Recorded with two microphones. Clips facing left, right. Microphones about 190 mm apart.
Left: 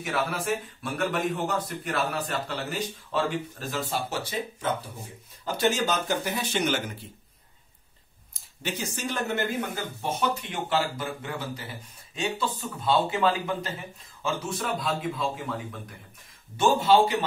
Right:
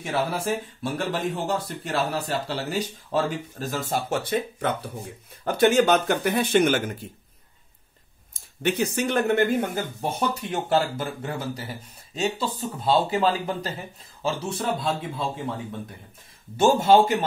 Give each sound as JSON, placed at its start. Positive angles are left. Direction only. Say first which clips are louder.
{"t": 0.0, "sound": "a man's voice", "louder": "right 3 dB", "side_deg": -35}
{"t": 8.3, "sound": "speech", "louder": "right 9 dB", "side_deg": -60}
{"t": 10.3, "sound": "a man's voice", "louder": "right 4 dB", "side_deg": -40}
{"t": 16.5, "sound": "a man's voice", "louder": "right 3 dB", "side_deg": -45}